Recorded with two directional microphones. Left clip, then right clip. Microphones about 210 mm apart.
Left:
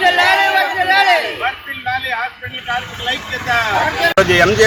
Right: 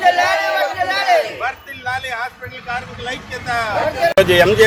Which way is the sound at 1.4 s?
20° right (ahead or behind).